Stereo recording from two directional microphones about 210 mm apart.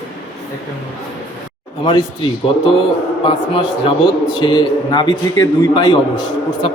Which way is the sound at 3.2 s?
25° left (ahead or behind).